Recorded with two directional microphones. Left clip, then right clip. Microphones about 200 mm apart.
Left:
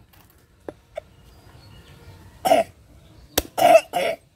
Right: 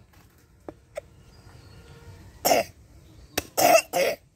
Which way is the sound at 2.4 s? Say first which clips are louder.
Left 4 dB; 55° right (ahead or behind).